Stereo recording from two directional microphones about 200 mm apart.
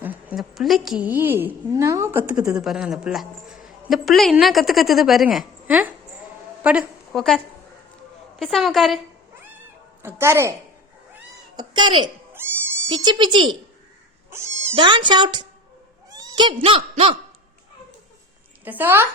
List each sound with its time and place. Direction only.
0.0 s a woman's voice: 10° right (ahead or behind)
10.0 s a woman's voice: 10° right (ahead or behind)
11.5 s speech: 25° right (ahead or behind)
12.3 s speech: 10° right (ahead or behind)
14.3 s cat: 15° right (ahead or behind)
14.8 s speech: 25° right (ahead or behind)
18.6 s a woman's voice: 10° right (ahead or behind)